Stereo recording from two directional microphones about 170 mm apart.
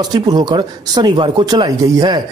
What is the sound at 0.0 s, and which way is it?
Speech, 25° right (ahead or behind).